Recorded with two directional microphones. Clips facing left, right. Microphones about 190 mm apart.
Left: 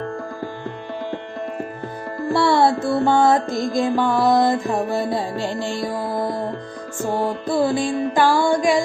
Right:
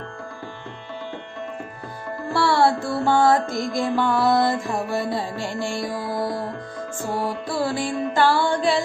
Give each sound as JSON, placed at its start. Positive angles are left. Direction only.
{"t": 2.3, "sound": "music", "side_deg": 20}
{"t": 7.2, "sound": "music", "side_deg": 20}